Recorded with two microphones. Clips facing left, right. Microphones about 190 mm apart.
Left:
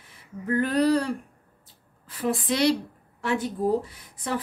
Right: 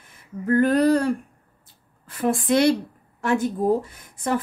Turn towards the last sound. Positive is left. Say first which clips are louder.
# right 6 dB
turn(degrees=-45)  # may be behind; listen again after turning